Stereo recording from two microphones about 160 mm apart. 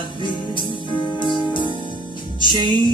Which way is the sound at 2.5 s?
30° right (ahead or behind).